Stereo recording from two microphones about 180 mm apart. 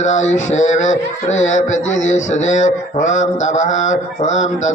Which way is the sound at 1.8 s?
90° left.